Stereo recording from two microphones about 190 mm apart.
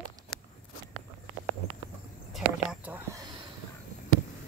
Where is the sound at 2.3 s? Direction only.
5° right (ahead or behind).